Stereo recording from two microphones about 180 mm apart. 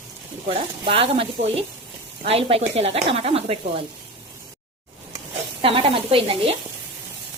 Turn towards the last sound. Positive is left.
turn(degrees=-30)  # may be behind; listen again after turning